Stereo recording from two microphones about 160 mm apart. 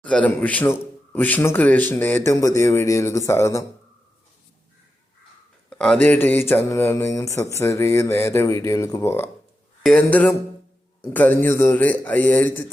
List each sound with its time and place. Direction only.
0.0 s speech: 10° left (ahead or behind)
5.7 s speech: 5° left (ahead or behind)